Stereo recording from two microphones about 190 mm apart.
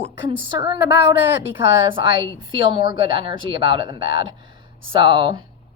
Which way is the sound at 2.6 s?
25° right (ahead or behind).